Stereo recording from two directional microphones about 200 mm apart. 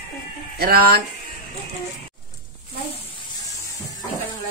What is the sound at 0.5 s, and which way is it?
Speech, 50° right (ahead or behind).